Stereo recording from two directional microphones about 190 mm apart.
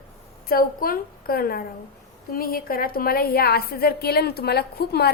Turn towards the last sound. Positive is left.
turn(degrees=55)  # may be behind; listen again after turning